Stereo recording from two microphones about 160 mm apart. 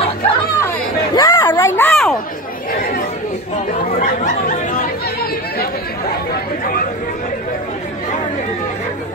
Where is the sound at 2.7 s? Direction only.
60° left (ahead or behind).